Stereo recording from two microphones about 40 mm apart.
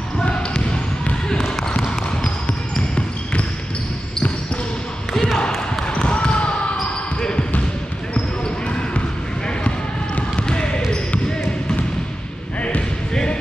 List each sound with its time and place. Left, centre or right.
1.3 s trickle: centre
5.9 s a sound: left
7.2 s basketball bounce: centre
10.4 s basketball bounce: left
13.1 s music: left